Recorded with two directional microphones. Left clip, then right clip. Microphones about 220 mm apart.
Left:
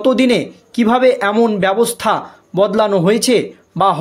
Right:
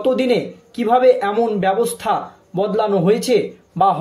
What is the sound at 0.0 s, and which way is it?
Speech, 45° left (ahead or behind).